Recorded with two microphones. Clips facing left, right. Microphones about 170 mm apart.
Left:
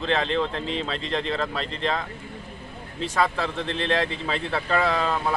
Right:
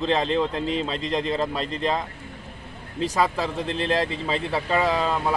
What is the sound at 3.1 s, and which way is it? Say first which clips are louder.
Speech: even; 10° right (ahead or behind).